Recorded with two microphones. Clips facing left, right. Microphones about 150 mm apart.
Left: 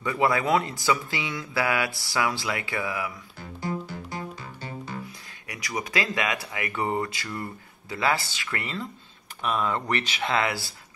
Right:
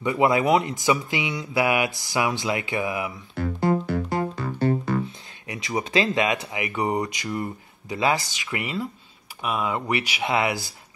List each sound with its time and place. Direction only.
0.0 s speech: 20° right (ahead or behind)
3.3 s music: 65° right (ahead or behind)
5.5 s speech: 25° right (ahead or behind)